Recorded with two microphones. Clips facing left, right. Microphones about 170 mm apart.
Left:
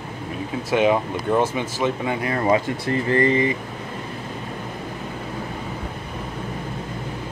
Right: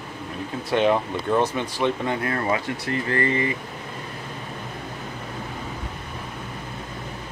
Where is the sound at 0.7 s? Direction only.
5° left (ahead or behind).